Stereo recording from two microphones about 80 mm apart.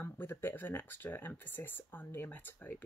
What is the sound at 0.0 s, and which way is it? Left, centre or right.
Speech, left.